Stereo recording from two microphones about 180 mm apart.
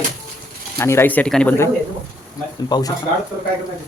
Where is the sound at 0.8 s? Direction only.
15° left (ahead or behind).